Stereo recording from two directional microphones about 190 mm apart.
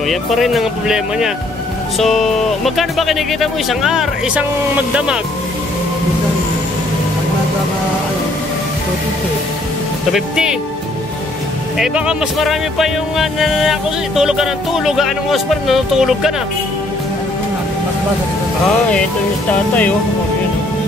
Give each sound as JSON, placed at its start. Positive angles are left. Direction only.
{"t": 0.1, "sound": "speech", "side_deg": 0}
{"t": 10.1, "sound": "speech", "side_deg": -5}
{"t": 11.8, "sound": "speech", "side_deg": -5}